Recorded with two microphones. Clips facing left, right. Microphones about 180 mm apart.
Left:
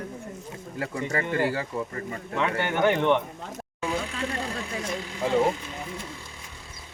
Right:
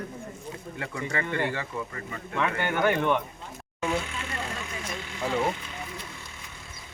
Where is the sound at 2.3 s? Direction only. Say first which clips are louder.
Left 1 dB; 20° left (ahead or behind).